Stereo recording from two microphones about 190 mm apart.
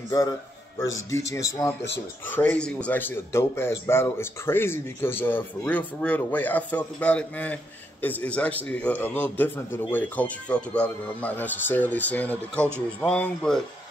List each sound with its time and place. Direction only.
1.3 s a man's voice: 15° left (ahead or behind)